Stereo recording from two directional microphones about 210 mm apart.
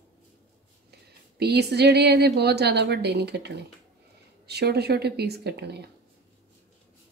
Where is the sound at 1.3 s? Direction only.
50° right (ahead or behind).